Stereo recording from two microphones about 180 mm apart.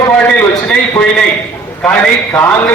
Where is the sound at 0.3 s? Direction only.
10° left (ahead or behind).